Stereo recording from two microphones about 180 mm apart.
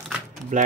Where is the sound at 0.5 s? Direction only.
45° right (ahead or behind).